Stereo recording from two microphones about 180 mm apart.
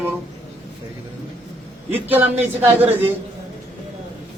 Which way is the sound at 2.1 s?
10° right (ahead or behind).